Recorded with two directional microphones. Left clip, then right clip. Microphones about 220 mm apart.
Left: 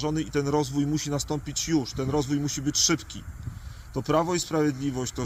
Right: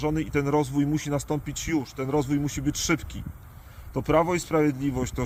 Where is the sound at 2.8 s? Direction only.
35° right (ahead or behind).